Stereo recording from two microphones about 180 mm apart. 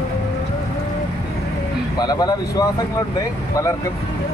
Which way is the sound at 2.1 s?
20° left (ahead or behind).